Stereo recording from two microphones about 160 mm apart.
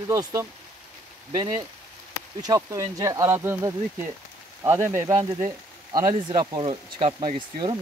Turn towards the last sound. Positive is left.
turn(degrees=-30)  # may be behind; listen again after turning